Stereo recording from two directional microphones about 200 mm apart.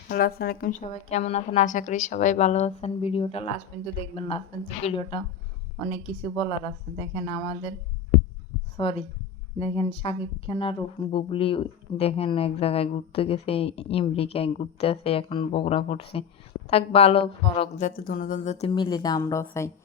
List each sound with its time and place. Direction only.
0.1 s a woman's voice: 50° left (ahead or behind); by 7.7 s 25° left (ahead or behind)
8.8 s speech: 30° left (ahead or behind)
17.8 s speech: 45° left (ahead or behind); by 19.7 s 15° left (ahead or behind)